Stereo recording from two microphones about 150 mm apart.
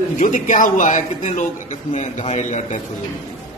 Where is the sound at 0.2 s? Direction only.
60° left (ahead or behind).